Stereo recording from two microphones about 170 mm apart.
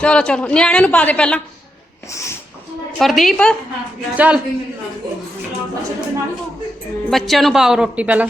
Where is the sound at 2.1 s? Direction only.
15° left (ahead or behind).